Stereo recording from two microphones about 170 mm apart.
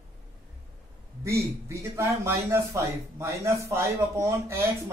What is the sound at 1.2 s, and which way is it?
Speech, 15° right (ahead or behind).